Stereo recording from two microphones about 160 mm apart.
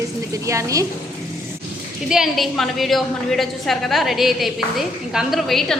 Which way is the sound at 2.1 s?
Centre (ahead or behind).